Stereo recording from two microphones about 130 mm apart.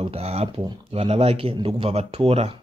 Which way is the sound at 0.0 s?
50° right (ahead or behind).